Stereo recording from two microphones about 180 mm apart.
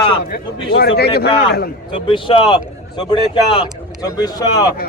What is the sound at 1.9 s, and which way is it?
Speech, 25° left (ahead or behind).